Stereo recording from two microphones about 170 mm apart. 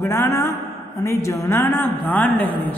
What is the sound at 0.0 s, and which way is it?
A woman's voice, 15° left (ahead or behind).